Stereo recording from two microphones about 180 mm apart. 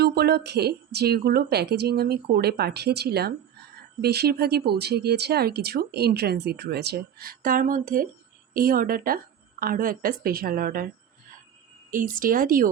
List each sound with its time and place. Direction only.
0.0 s a woman's voice: 60° right (ahead or behind)
11.9 s a woman's voice: 50° right (ahead or behind)